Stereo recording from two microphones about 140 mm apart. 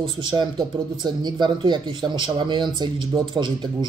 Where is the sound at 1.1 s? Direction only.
30° right (ahead or behind).